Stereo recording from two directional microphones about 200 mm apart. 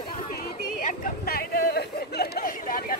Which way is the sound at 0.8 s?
45° left (ahead or behind).